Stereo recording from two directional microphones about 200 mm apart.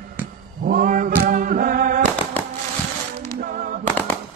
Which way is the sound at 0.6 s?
45° right (ahead or behind).